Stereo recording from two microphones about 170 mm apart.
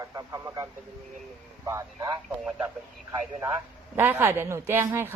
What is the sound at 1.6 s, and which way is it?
Speech, 15° right (ahead or behind).